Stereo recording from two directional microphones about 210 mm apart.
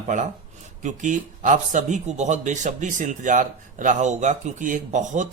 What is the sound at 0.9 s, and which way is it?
A man's voice, 35° right (ahead or behind).